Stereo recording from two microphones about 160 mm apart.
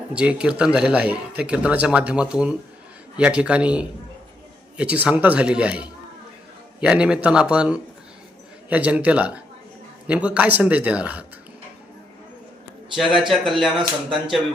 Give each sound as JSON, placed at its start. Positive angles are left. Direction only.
{"t": 0.1, "sound": "a man's voice", "side_deg": -5}
{"t": 12.9, "sound": "a man's voice", "side_deg": 0}